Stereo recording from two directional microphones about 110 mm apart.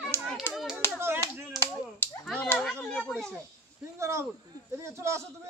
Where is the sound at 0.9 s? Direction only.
20° right (ahead or behind).